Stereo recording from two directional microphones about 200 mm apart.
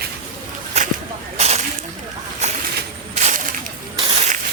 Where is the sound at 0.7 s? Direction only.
35° right (ahead or behind).